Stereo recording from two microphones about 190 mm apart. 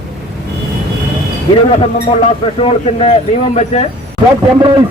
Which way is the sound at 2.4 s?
30° left (ahead or behind).